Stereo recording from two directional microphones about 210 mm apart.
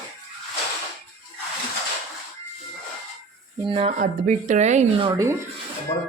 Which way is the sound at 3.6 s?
25° right (ahead or behind).